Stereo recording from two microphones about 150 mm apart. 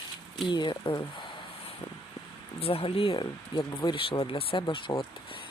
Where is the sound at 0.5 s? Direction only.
30° left (ahead or behind).